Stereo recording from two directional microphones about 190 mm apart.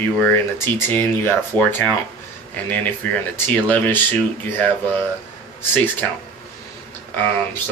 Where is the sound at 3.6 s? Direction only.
10° left (ahead or behind).